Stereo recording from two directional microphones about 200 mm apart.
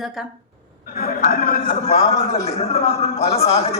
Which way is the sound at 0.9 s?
50° left (ahead or behind).